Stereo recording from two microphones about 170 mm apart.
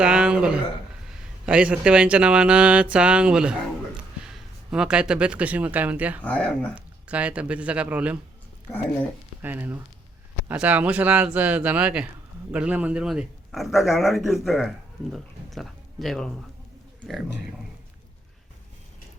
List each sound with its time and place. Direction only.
0.0 s a man's voice: 5° right (ahead or behind)
6.2 s speech: 10° left (ahead or behind)
6.7 s speech: 5° right (ahead or behind)
9.4 s a man's voice: 10° right (ahead or behind)